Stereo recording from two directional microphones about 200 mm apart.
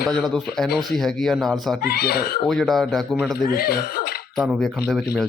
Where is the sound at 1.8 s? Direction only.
50° left (ahead or behind).